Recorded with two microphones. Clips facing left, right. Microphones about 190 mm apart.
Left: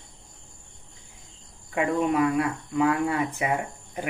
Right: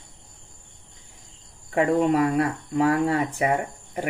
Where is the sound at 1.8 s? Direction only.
35° right (ahead or behind).